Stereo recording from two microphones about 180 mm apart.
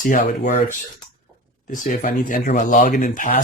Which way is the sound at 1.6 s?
50° left (ahead or behind).